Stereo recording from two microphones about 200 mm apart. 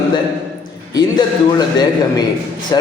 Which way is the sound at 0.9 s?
20° left (ahead or behind).